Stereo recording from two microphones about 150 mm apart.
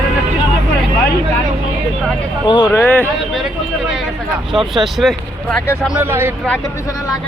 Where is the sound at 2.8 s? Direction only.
15° left (ahead or behind).